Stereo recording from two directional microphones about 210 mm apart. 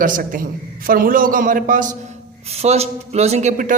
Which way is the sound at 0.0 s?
40° right (ahead or behind).